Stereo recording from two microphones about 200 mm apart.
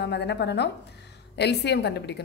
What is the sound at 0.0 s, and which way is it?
Speech, 55° left (ahead or behind).